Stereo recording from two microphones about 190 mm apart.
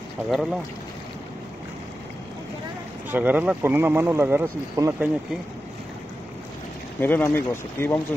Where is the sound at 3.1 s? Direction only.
10° right (ahead or behind).